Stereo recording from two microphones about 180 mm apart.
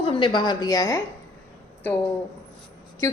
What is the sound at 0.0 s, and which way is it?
A woman's voice, 30° left (ahead or behind).